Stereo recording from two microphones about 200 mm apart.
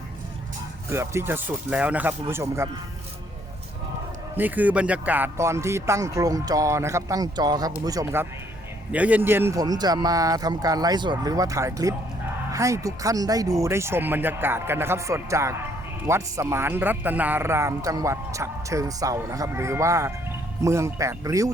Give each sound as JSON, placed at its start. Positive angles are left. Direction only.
{"t": 0.9, "sound": "a man's voice", "side_deg": -10}
{"t": 4.4, "sound": "a man's voice", "side_deg": -10}